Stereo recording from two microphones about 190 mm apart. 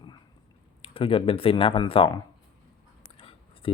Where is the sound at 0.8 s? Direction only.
30° left (ahead or behind).